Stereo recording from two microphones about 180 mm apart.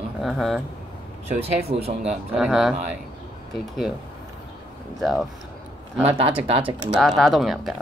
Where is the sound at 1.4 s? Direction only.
35° right (ahead or behind).